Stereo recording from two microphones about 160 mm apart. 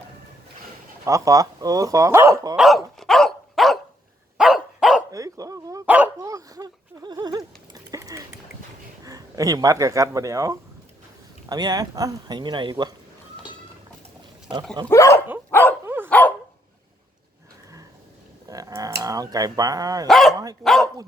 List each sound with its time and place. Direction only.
1.0 s speech: 20° right (ahead or behind)
2.6 s dog: centre (ahead or behind)
5.1 s dog: 20° right (ahead or behind)
5.8 s dog: 10° right (ahead or behind)
6.1 s a sound: 20° right (ahead or behind)
9.0 s speech: 20° right (ahead or behind)
14.8 s speech: 20° left (ahead or behind)
15.4 s dog: 10° left (ahead or behind)
15.8 s dog: 15° right (ahead or behind)
16.0 s dog: 10° left (ahead or behind)
18.4 s dog: 20° right (ahead or behind)
20.1 s speech: centre (ahead or behind)